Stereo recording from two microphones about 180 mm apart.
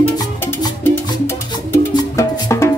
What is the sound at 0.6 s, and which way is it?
Music, 15° left (ahead or behind).